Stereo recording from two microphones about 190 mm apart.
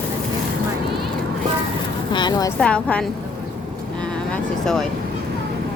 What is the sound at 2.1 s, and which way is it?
Speech, 25° left (ahead or behind).